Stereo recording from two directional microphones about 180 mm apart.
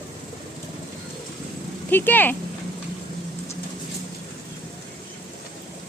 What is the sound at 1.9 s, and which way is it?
Speech, 10° left (ahead or behind).